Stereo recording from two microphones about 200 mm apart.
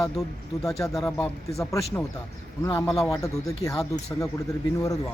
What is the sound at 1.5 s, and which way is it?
Speech, 15° left (ahead or behind).